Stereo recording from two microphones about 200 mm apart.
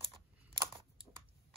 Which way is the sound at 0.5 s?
25° right (ahead or behind).